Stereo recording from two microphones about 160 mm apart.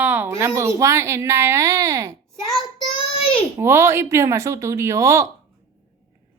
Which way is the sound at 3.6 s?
15° right (ahead or behind).